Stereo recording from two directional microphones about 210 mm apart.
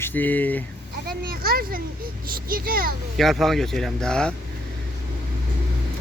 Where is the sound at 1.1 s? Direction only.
45° right (ahead or behind).